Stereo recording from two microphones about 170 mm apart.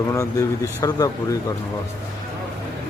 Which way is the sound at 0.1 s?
20° left (ahead or behind).